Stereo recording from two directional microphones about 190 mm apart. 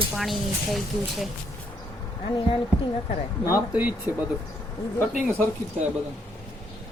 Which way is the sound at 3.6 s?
10° right (ahead or behind).